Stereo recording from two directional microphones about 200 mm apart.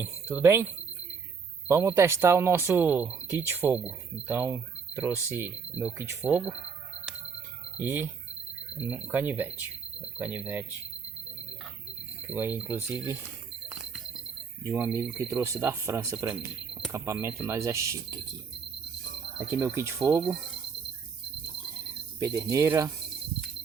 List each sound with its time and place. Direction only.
0.0 s speech: 10° right (ahead or behind)
7.8 s speech: 10° right (ahead or behind)
12.3 s speech: 10° right (ahead or behind)
14.6 s speech: 10° right (ahead or behind)
19.5 s speech: 10° right (ahead or behind)
22.2 s speech: 15° right (ahead or behind)